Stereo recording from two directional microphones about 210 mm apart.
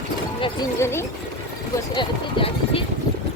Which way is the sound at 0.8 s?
10° left (ahead or behind).